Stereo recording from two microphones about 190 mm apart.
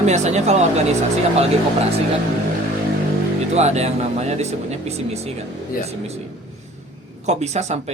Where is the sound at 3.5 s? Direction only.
35° right (ahead or behind).